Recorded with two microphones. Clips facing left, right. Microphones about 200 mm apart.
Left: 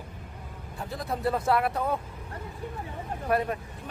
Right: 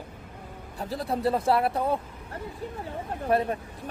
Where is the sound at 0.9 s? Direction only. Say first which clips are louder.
Right 3 dB; 30° right (ahead or behind).